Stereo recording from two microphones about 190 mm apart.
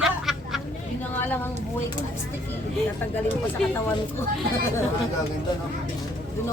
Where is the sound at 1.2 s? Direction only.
10° left (ahead or behind).